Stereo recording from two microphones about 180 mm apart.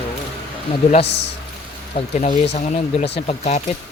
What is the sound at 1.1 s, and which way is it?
Speech, 75° left (ahead or behind).